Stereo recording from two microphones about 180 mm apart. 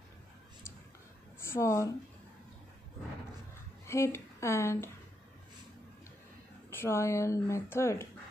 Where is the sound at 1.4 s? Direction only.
15° left (ahead or behind).